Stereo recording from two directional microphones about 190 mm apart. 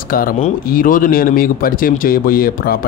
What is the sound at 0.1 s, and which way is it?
Speech, 50° left (ahead or behind).